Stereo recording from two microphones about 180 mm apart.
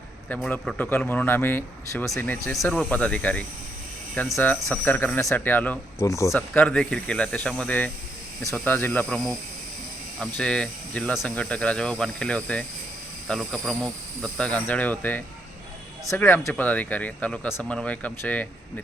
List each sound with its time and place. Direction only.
0.5 s speech: 5° left (ahead or behind)
6.3 s speech: 5° left (ahead or behind)